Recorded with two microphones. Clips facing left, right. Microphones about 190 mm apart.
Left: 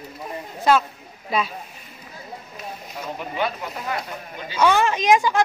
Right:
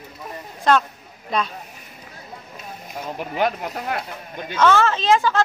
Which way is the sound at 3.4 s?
60° right (ahead or behind).